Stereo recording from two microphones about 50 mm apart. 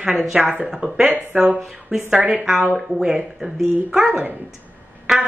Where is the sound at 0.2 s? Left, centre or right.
Centre.